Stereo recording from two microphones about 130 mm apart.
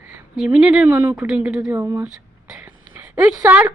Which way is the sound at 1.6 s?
25° right (ahead or behind).